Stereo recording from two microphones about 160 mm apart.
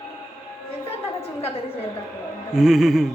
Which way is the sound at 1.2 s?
40° left (ahead or behind).